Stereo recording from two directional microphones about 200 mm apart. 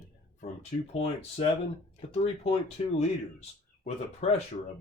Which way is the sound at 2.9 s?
35° left (ahead or behind).